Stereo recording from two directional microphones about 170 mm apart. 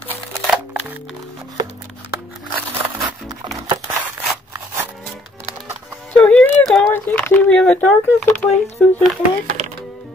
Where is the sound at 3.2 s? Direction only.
25° right (ahead or behind).